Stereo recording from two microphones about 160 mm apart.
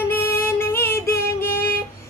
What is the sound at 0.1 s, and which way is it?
Music, 15° left (ahead or behind).